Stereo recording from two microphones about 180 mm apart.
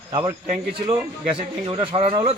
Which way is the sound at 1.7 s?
30° right (ahead or behind).